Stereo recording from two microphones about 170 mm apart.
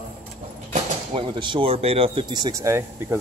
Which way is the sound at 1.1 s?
30° right (ahead or behind).